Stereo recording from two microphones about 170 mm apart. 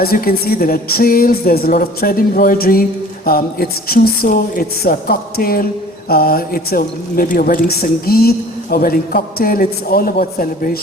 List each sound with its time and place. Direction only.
0.0 s a woman's voice: 65° left (ahead or behind)